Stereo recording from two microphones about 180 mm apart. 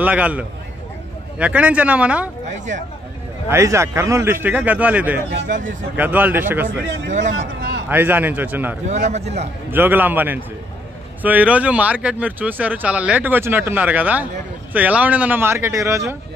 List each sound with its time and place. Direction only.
0.0 s speech: 10° right (ahead or behind)
3.4 s speech: 15° right (ahead or behind)
5.5 s speech: 45° right (ahead or behind)
5.9 s speech: 10° right (ahead or behind)
6.7 s speech: 85° right
7.9 s speech: 10° right (ahead or behind)
9.1 s a man's voice: 35° right (ahead or behind)
9.7 s speech: 10° right (ahead or behind)